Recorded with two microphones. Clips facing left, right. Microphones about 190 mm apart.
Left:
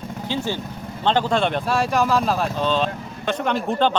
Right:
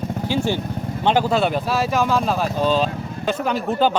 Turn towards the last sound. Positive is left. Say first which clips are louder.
# right 1 dB
turn(degrees=-5)  # may be behind; listen again after turning